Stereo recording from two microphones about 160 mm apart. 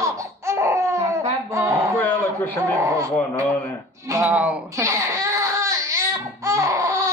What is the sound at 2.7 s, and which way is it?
Speech, 20° right (ahead or behind).